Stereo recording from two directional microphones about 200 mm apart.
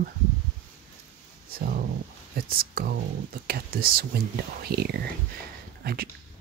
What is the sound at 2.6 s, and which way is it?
Speech, 50° right (ahead or behind).